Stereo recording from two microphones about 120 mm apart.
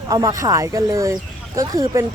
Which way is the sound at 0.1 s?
30° right (ahead or behind).